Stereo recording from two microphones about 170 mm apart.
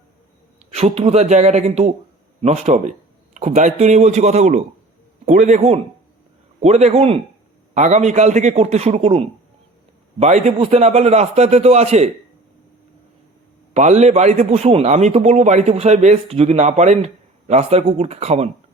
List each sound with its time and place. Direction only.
0.7 s a man's voice: 40° right (ahead or behind)
13.7 s a man's voice: 40° right (ahead or behind)